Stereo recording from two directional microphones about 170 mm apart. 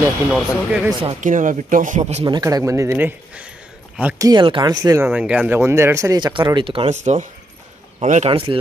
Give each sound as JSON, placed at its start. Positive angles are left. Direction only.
{"t": 0.3, "sound": "speech", "side_deg": -5}
{"t": 1.2, "sound": "speech", "side_deg": -50}
{"t": 2.2, "sound": "speech", "side_deg": -25}
{"t": 4.2, "sound": "speech", "side_deg": -25}
{"t": 5.0, "sound": "a man's voice", "side_deg": -5}